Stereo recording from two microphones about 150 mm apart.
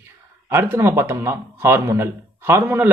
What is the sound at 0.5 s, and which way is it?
Speech, 15° right (ahead or behind).